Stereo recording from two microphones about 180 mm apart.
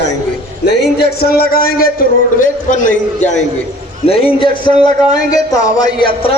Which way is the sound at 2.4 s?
45° left (ahead or behind).